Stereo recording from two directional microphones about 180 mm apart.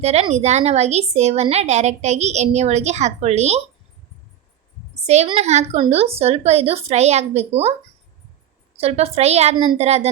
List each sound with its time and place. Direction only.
0.0 s speech: 35° right (ahead or behind)
5.0 s speech: 40° right (ahead or behind)
8.7 s speech: 35° right (ahead or behind)